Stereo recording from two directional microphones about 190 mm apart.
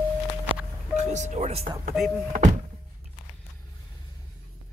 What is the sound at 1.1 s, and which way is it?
Speech, 40° right (ahead or behind).